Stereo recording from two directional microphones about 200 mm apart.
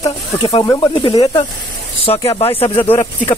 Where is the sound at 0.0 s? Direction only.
25° left (ahead or behind).